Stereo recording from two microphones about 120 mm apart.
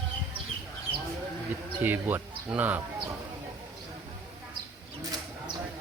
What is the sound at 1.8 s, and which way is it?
Speech, 15° right (ahead or behind).